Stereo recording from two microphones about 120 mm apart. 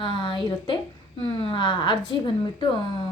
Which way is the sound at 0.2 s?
40° left (ahead or behind).